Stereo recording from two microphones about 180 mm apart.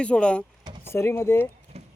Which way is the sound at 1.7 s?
35° right (ahead or behind).